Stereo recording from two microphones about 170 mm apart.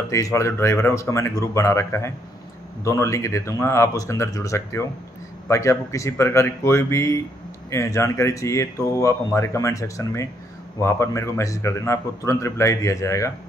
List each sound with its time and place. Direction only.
0.1 s speech: 20° left (ahead or behind)